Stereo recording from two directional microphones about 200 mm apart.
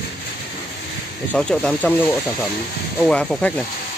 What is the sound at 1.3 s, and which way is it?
Speech, 5° left (ahead or behind).